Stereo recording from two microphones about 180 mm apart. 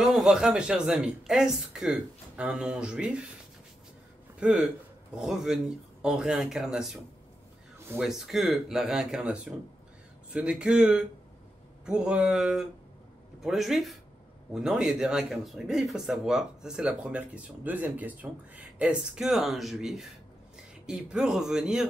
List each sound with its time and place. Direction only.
0.0 s speech: 5° right (ahead or behind)
4.4 s speech: 5° right (ahead or behind)
8.0 s speech: centre (ahead or behind)